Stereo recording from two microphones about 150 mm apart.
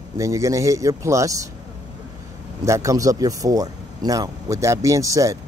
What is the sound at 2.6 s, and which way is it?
Speech, 20° right (ahead or behind).